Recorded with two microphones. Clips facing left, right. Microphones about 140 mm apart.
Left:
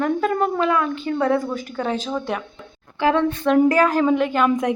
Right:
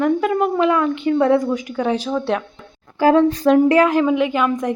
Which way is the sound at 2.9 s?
40° right (ahead or behind).